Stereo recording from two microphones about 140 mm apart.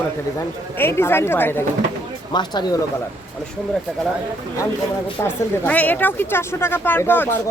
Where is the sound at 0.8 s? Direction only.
15° left (ahead or behind).